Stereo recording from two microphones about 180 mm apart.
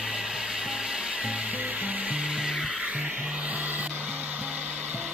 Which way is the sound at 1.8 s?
5° right (ahead or behind).